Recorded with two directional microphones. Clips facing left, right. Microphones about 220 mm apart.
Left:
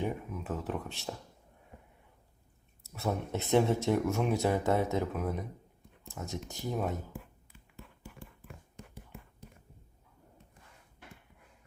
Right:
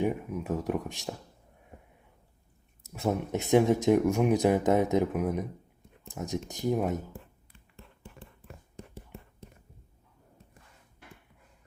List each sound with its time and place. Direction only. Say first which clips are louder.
0.0 s speech: right 6 dB; 15° right (ahead or behind)
2.8 s speech: right 4 dB; 15° right (ahead or behind)